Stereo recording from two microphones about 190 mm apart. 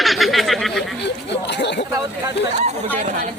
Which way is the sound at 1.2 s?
65° left (ahead or behind).